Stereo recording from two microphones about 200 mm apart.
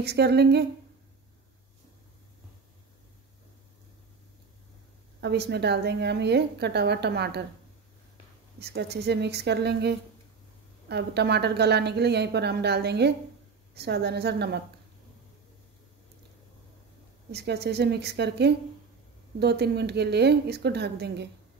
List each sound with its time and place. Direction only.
0.0 s a woman's voice: 55° right (ahead or behind)
5.2 s a woman's voice: 55° right (ahead or behind)
8.5 s a woman's voice: 55° right (ahead or behind)
17.3 s a woman's voice: 55° right (ahead or behind)